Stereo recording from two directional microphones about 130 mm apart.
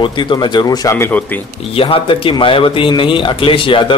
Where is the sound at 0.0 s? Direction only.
40° left (ahead or behind); by 1.4 s 15° left (ahead or behind).